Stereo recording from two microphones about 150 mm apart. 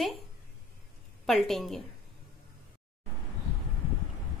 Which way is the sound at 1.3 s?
Centre (ahead or behind).